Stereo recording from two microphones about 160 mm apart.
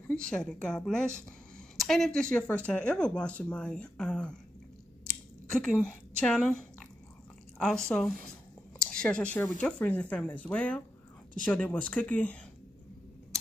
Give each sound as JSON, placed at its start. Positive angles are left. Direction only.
{"t": 0.1, "sound": "speech", "side_deg": 5}
{"t": 5.5, "sound": "speech", "side_deg": 5}
{"t": 7.5, "sound": "speech", "side_deg": 5}